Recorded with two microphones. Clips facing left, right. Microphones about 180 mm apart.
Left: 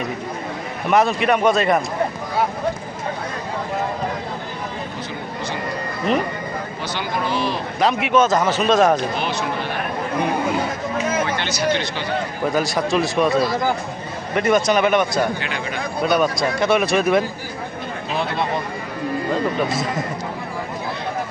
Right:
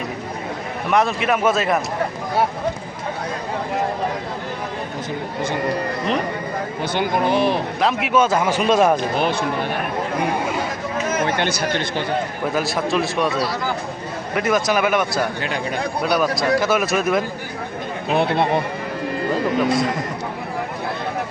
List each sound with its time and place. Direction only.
0.9 s speech: centre (ahead or behind)
6.9 s speech: 55° right (ahead or behind)
7.8 s speech: centre (ahead or behind)
9.1 s speech: 50° right (ahead or behind)
11.3 s speech: 55° right (ahead or behind)
12.5 s speech: centre (ahead or behind)
18.1 s speech: 60° right (ahead or behind)